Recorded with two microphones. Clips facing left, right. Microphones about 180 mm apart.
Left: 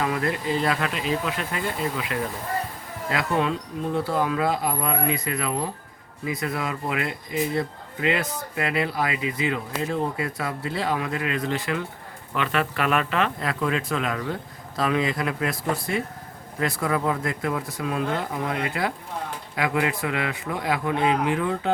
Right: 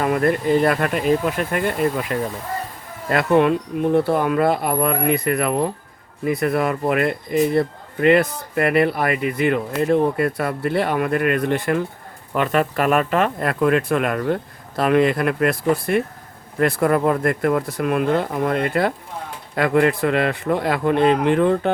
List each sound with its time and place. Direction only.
0.0 s speech: 50° right (ahead or behind)
3.1 s speech: 60° right (ahead or behind)